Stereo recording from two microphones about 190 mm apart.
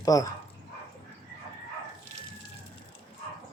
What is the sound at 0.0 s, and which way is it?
Speech, 20° left (ahead or behind).